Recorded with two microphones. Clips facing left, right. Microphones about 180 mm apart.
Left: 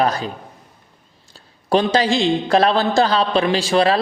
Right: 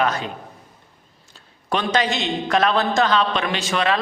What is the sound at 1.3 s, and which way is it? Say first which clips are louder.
A man's voice: left 7 dB; 35° left (ahead or behind).